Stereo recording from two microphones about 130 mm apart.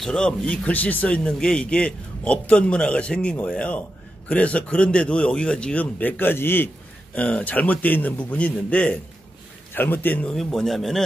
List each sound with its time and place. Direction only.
0.0 s speech: 5° left (ahead or behind)
10.3 s speech: centre (ahead or behind)